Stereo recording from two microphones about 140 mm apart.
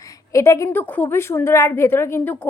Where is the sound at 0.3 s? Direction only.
20° left (ahead or behind).